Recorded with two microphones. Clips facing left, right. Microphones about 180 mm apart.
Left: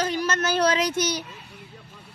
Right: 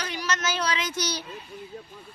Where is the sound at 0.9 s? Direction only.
25° left (ahead or behind).